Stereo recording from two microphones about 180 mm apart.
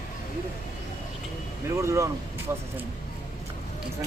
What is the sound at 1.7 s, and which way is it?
Speech, 15° right (ahead or behind).